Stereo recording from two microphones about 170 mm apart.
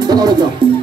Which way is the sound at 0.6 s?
30° right (ahead or behind).